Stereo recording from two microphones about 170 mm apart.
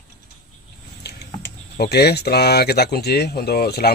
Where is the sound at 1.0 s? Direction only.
75° left (ahead or behind).